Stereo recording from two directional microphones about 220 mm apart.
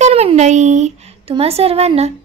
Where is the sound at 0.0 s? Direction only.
30° right (ahead or behind).